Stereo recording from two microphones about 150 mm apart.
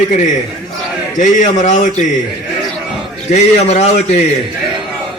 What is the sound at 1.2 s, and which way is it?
Speech, 55° left (ahead or behind).